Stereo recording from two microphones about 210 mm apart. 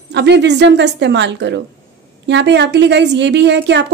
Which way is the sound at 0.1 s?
55° right (ahead or behind).